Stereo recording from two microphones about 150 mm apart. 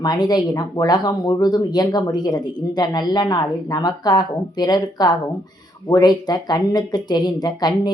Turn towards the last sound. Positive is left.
turn(degrees=25)  # may be behind; listen again after turning